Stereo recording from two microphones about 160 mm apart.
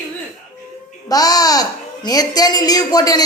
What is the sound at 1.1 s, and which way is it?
Speech, 25° left (ahead or behind).